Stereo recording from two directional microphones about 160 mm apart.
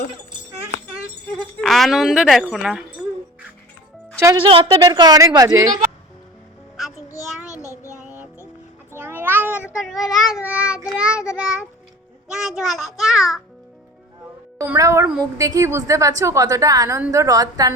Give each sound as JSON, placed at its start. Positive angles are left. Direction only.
{"t": 1.6, "sound": "speech", "side_deg": 0}
{"t": 4.4, "sound": "a woman's voice", "side_deg": -35}
{"t": 4.9, "sound": "a woman's voice", "side_deg": -25}
{"t": 7.5, "sound": "child singing", "side_deg": 20}
{"t": 8.0, "sound": "music", "side_deg": -10}
{"t": 9.0, "sound": "a sound", "side_deg": -15}
{"t": 9.7, "sound": "meow", "side_deg": 0}
{"t": 10.8, "sound": "child singing", "side_deg": -5}
{"t": 12.3, "sound": "speech", "side_deg": -5}
{"t": 14.6, "sound": "a child's voice", "side_deg": -20}